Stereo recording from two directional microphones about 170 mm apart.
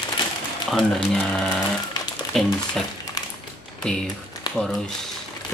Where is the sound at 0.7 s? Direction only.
Centre (ahead or behind).